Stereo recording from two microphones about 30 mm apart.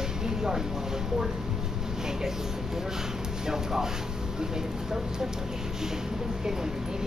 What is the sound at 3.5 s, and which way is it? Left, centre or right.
Speech, centre.